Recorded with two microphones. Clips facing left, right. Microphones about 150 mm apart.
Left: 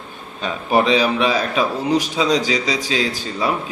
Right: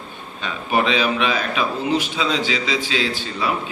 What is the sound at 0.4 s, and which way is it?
A man's voice, 35° left (ahead or behind).